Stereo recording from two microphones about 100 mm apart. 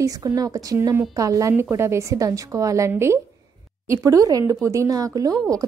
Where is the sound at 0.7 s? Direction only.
25° right (ahead or behind).